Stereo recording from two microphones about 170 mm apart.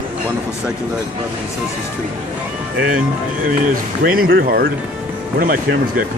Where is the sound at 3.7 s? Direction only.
60° right (ahead or behind).